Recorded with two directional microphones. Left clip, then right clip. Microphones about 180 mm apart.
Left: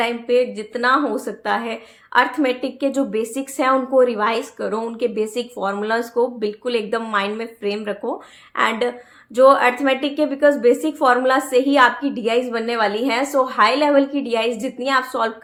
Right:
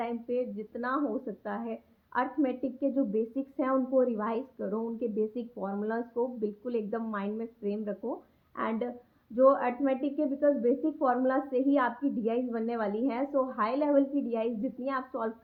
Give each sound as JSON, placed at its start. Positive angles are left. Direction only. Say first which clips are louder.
{"t": 0.0, "sound": "a woman's voice", "louder": "left 14 dB", "side_deg": 10}